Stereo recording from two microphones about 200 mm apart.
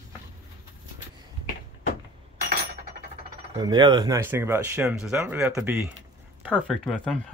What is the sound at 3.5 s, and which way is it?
Speech, 20° right (ahead or behind).